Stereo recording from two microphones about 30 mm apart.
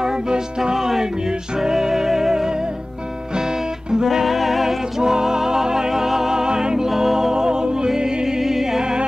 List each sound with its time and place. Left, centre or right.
0.6 s music: centre
3.9 s music: centre
6.9 s music: centre